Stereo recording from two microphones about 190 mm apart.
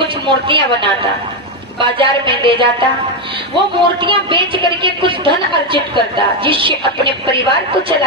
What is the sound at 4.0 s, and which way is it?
A woman's voice, 25° right (ahead or behind).